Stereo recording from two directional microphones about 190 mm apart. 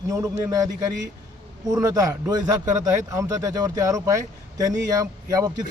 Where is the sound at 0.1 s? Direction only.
15° right (ahead or behind).